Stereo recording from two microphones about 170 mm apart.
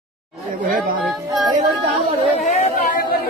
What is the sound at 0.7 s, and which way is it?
Speech, 55° right (ahead or behind).